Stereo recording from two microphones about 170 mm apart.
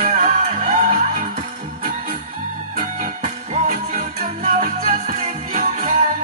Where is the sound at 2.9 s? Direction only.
45° right (ahead or behind).